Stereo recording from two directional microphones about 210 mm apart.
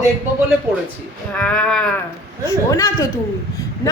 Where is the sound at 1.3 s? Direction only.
5° left (ahead or behind).